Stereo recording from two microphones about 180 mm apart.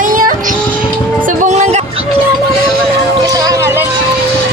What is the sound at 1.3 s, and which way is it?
Music, 40° right (ahead or behind).